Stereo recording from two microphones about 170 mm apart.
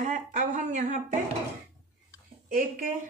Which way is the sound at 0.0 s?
40° right (ahead or behind).